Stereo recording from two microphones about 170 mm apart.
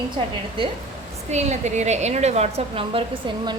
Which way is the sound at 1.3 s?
40° right (ahead or behind).